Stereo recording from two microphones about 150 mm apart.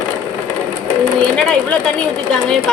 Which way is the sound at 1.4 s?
10° left (ahead or behind).